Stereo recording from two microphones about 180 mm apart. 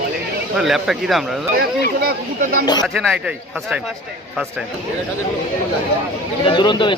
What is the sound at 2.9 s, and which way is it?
Speech, centre (ahead or behind).